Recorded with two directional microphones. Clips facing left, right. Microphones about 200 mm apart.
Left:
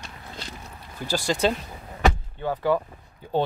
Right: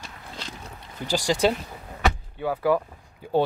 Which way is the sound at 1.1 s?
15° right (ahead or behind).